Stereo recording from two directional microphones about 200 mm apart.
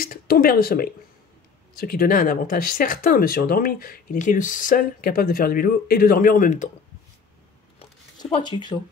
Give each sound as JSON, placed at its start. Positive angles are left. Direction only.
{"t": 0.0, "sound": "speech", "side_deg": 45}
{"t": 8.2, "sound": "speech", "side_deg": 20}